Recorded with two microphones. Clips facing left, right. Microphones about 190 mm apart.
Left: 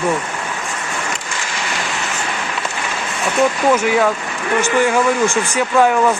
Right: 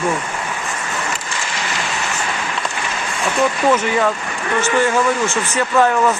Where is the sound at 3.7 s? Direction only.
10° left (ahead or behind).